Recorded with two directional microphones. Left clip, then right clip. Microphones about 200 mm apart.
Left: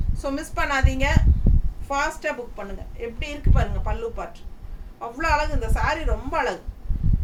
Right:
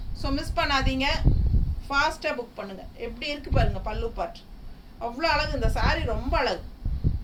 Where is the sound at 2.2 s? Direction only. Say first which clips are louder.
Left 1 dB; 10° left (ahead or behind).